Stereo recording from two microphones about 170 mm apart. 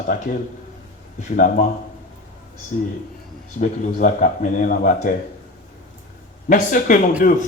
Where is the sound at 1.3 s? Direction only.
50° left (ahead or behind).